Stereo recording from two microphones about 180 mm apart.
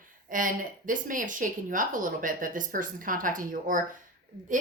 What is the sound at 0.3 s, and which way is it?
A woman's voice, 50° right (ahead or behind).